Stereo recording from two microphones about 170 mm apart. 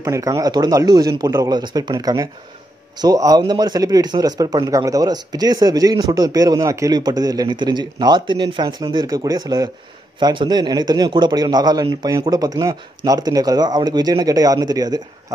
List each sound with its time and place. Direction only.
0.0 s speech: 20° right (ahead or behind)